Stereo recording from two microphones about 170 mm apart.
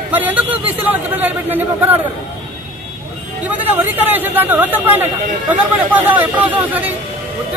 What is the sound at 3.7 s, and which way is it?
Speech, 10° right (ahead or behind).